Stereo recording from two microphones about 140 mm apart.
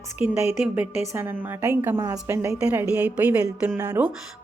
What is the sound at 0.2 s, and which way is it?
A woman's voice, 20° right (ahead or behind).